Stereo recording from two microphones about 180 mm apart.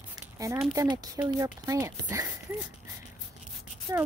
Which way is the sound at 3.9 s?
20° right (ahead or behind).